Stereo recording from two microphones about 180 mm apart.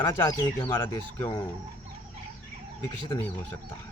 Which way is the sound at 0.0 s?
25° left (ahead or behind).